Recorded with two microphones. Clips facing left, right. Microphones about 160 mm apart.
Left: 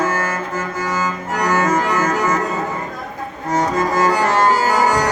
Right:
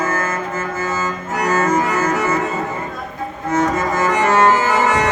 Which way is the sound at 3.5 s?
35° left (ahead or behind).